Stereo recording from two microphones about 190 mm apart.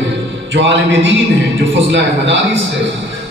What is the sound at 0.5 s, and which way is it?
A man's voice, 70° right (ahead or behind).